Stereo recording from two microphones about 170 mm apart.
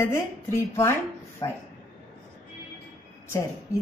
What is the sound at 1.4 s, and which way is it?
Speech, 30° left (ahead or behind).